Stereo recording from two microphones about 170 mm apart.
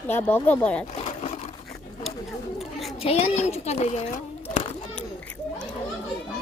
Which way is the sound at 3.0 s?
35° left (ahead or behind).